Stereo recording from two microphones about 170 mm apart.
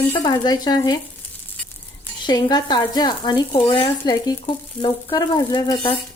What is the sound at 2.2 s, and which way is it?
Speech, 25° left (ahead or behind).